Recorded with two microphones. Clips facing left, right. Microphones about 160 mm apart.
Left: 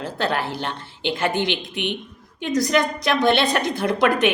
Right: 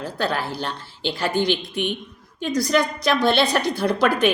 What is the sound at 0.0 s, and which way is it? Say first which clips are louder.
A woman's voice: left 1 dB; 20° left (ahead or behind).